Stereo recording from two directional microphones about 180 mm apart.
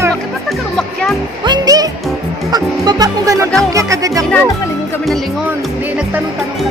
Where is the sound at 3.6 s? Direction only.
15° right (ahead or behind).